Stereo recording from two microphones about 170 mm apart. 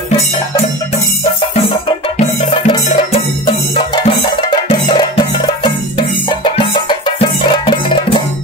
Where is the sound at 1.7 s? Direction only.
35° left (ahead or behind).